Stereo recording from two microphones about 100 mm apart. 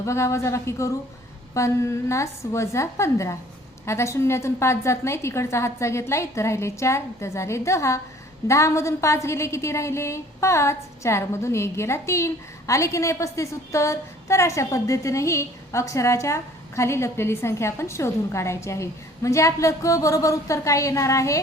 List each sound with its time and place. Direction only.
0.0 s a woman's voice: 30° left (ahead or behind)